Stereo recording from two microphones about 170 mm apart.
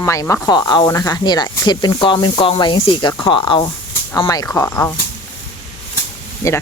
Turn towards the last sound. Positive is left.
turn(degrees=15)  # may be behind; listen again after turning